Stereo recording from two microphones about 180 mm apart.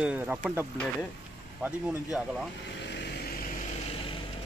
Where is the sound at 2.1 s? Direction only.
Centre (ahead or behind).